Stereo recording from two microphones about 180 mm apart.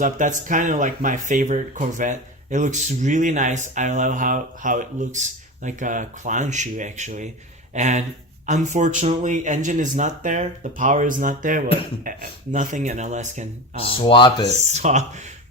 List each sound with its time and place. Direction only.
0.0 s speech: 45° right (ahead or behind)
13.9 s speech: 25° left (ahead or behind)
14.5 s speech: 40° right (ahead or behind)